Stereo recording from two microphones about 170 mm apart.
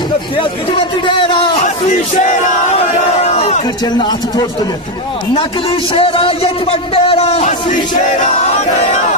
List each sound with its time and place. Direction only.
0.4 s a man's voice: 30° left (ahead or behind)
1.9 s battle cry: 50° left (ahead or behind)
3.3 s a sound: 40° left (ahead or behind)
3.8 s a man's voice: 25° left (ahead or behind)
5.9 s speech: 35° left (ahead or behind)